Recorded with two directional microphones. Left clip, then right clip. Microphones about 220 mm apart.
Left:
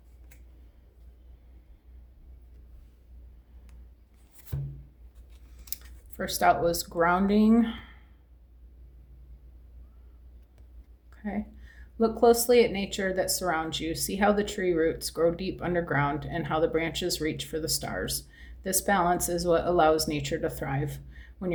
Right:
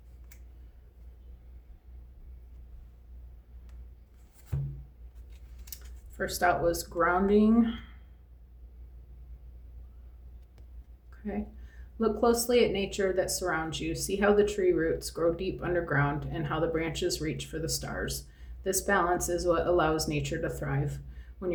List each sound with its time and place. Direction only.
5.7 s speech: 40° left (ahead or behind)
11.1 s a sound: 40° left (ahead or behind)
11.9 s speech: 35° left (ahead or behind)